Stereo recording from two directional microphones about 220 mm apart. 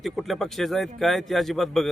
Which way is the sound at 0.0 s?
Centre (ahead or behind).